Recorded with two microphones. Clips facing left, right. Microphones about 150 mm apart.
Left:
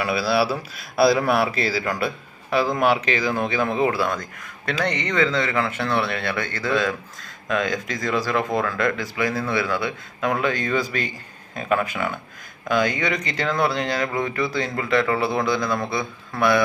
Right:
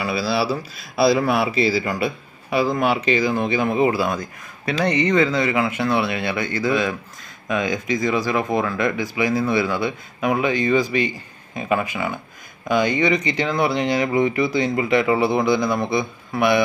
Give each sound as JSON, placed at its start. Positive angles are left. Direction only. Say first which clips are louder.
{"t": 0.9, "sound": "a man's voice", "louder": "even", "side_deg": 0}
{"t": 4.1, "sound": "speech", "louder": "right 2 dB", "side_deg": -15}